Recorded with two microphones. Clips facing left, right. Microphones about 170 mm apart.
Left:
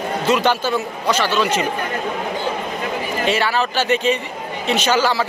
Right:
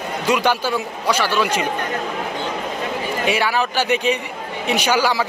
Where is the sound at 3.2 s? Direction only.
10° right (ahead or behind).